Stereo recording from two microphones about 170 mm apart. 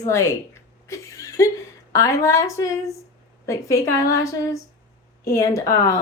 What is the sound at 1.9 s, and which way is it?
A woman's voice, 20° left (ahead or behind).